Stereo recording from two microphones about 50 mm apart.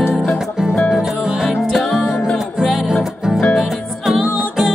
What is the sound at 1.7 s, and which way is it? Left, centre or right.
Music, centre.